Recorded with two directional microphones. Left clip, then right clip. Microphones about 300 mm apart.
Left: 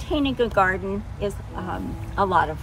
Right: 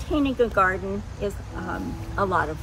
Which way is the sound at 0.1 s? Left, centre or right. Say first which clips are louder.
Even; left.